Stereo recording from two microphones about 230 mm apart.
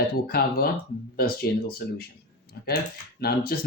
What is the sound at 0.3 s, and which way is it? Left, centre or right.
Speech, left.